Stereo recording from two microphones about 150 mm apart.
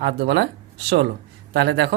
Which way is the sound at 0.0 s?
85° right.